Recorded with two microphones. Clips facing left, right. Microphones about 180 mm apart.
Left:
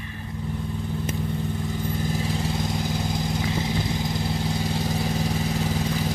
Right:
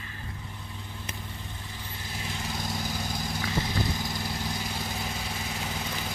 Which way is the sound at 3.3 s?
20° left (ahead or behind).